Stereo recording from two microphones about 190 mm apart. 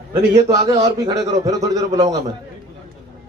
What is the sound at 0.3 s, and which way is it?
A man's voice, 20° right (ahead or behind).